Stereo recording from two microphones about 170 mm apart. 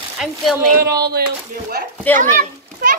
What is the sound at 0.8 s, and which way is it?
Speech, 70° right (ahead or behind).